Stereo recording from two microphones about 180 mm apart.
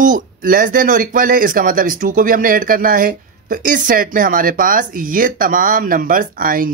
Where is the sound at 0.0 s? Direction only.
50° right (ahead or behind).